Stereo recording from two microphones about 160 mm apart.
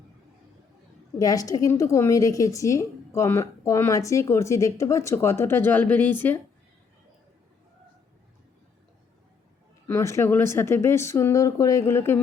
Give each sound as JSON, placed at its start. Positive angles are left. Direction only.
{"t": 1.2, "sound": "a woman's voice", "side_deg": 20}
{"t": 9.8, "sound": "speech", "side_deg": 15}